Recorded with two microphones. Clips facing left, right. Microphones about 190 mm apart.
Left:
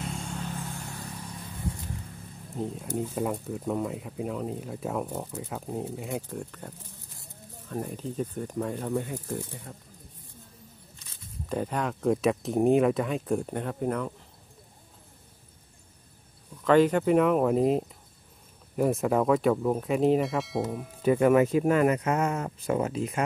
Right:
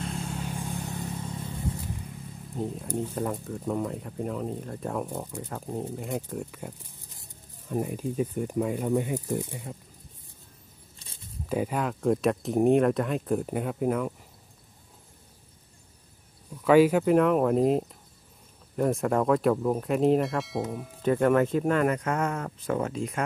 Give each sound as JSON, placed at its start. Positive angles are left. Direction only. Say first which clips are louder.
{"t": 0.0, "sound": "vehicle", "louder": "right 2 dB", "side_deg": 0}
{"t": 0.5, "sound": "vehicle", "louder": "right 3 dB", "side_deg": -15}
{"t": 2.5, "sound": "speech", "louder": "even", "side_deg": 0}
{"t": 7.7, "sound": "speech", "louder": "right 4 dB", "side_deg": -10}
{"t": 11.4, "sound": "speech", "louder": "right 2 dB", "side_deg": -5}
{"t": 16.6, "sound": "speech", "louder": "right 2 dB", "side_deg": -10}